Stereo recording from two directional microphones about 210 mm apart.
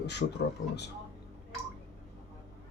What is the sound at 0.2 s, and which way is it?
Speech, 55° left (ahead or behind).